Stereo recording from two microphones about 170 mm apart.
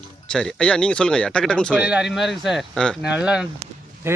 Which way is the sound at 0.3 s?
5° left (ahead or behind).